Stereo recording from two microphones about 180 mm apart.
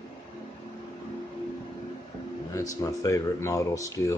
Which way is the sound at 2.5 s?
20° left (ahead or behind).